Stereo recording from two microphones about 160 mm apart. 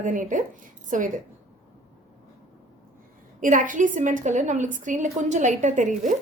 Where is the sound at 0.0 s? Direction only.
55° right (ahead or behind).